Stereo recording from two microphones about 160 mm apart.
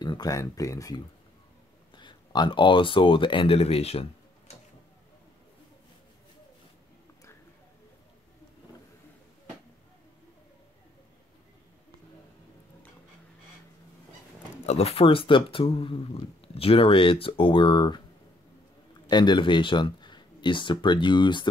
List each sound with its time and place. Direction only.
0.0 s speech: 25° left (ahead or behind)
14.7 s speech: 40° left (ahead or behind)
19.0 s speech: 25° left (ahead or behind)